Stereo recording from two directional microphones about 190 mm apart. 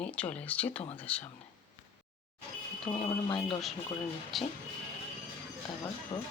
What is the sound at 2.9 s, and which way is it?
Speech, 25° left (ahead or behind).